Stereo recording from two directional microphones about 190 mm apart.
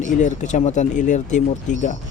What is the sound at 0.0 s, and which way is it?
Speech, 40° left (ahead or behind).